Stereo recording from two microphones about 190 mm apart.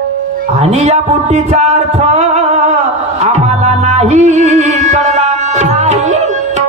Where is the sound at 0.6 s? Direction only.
35° right (ahead or behind).